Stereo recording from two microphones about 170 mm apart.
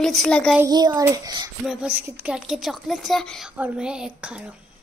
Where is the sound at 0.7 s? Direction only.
25° right (ahead or behind).